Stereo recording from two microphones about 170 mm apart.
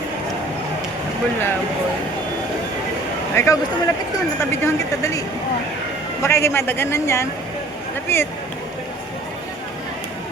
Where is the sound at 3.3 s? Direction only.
15° left (ahead or behind).